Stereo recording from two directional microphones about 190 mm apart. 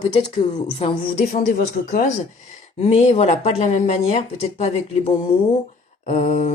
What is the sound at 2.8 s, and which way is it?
Speech, 35° left (ahead or behind).